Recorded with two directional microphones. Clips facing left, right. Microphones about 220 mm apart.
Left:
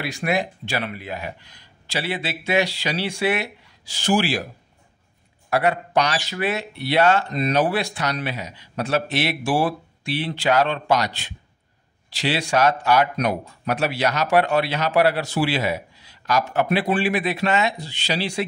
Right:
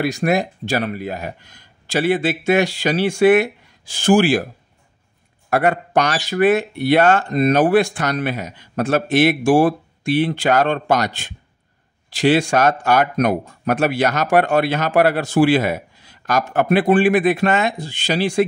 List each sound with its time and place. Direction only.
0.0 s a man's voice: 45° right (ahead or behind)
5.5 s a man's voice: 50° right (ahead or behind)